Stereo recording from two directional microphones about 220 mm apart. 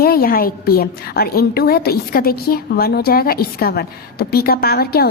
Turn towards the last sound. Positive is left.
turn(degrees=45)  # may be behind; listen again after turning